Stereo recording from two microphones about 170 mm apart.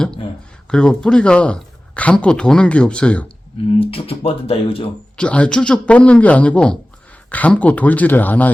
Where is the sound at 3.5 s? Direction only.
35° left (ahead or behind).